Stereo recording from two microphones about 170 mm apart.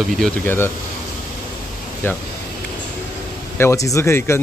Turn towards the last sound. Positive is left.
turn(degrees=15)  # may be behind; listen again after turning